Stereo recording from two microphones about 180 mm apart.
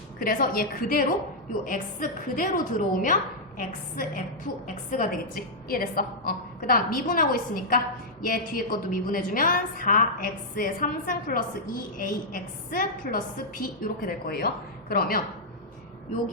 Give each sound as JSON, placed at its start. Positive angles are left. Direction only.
{"t": 0.2, "sound": "a woman's voice", "side_deg": 50}